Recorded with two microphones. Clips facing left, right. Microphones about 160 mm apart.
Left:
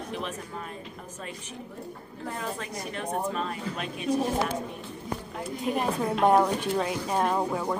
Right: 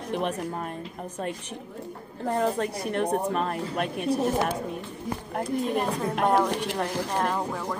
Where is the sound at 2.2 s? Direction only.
45° right (ahead or behind).